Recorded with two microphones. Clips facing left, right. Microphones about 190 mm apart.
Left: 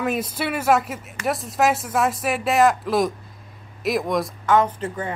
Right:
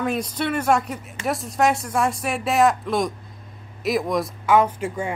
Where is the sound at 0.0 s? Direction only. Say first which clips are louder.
Even; 5° left (ahead or behind).